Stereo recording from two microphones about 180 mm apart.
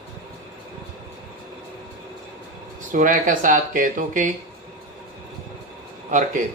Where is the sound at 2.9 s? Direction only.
45° right (ahead or behind).